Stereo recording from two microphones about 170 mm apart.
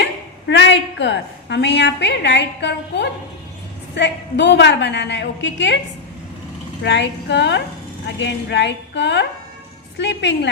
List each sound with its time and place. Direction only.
0.4 s a woman's voice: 90° left
6.8 s a woman's voice: 90° left